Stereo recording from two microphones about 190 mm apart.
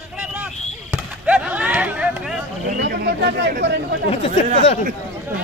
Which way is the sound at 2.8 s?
60° right (ahead or behind).